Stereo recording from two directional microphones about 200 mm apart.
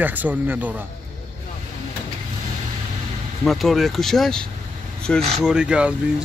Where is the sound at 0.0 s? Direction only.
10° right (ahead or behind).